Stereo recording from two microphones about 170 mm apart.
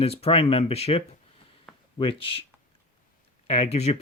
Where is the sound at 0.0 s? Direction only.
35° left (ahead or behind).